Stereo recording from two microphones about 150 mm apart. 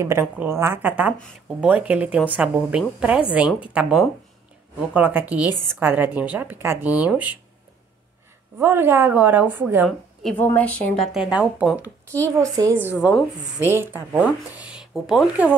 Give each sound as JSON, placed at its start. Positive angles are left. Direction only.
{"t": 0.0, "sound": "speech", "side_deg": -15}
{"t": 8.5, "sound": "speech", "side_deg": -15}
{"t": 10.4, "sound": "a woman's voice", "side_deg": 10}
{"t": 11.1, "sound": "speech", "side_deg": -5}
{"t": 12.2, "sound": "a woman's voice", "side_deg": -20}